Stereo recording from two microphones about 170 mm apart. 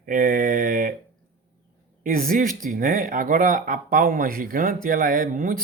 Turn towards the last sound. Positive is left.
turn(degrees=-55)  # may be behind; listen again after turning